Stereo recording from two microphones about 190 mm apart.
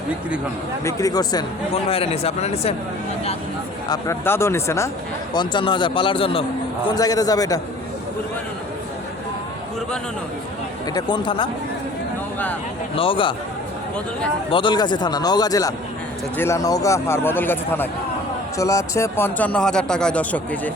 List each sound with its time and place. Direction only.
0.9 s speech: 15° left (ahead or behind)
1.9 s speech: 30° left (ahead or behind)
3.8 s speech: 20° left (ahead or behind)
10.9 s speech: 25° left (ahead or behind)
13.0 s speech: 25° left (ahead or behind)
14.5 s speech: 25° left (ahead or behind); by 20.6 s 5° left (ahead or behind)